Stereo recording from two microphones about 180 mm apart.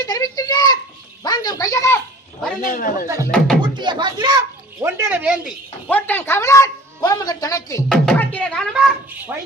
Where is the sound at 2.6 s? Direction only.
50° left (ahead or behind).